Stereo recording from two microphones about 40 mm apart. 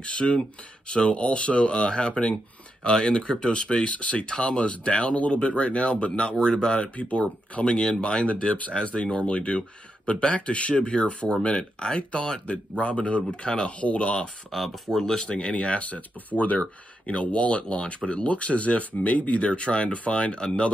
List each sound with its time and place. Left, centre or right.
0.0 s speech: left
7.0 s speech: left
14.5 s speech: centre
15.0 s speech: centre
15.5 s speech: left